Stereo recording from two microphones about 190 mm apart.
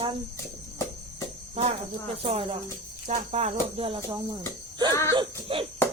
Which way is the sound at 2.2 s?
30° right (ahead or behind).